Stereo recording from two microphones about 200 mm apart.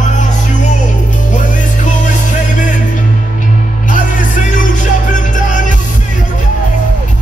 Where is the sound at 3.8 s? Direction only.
40° left (ahead or behind).